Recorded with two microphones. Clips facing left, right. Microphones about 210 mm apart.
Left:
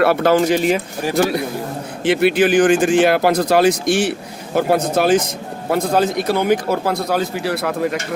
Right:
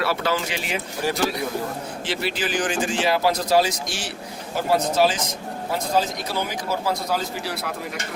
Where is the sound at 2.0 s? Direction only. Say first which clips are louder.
Left 13 dB; 60° left (ahead or behind).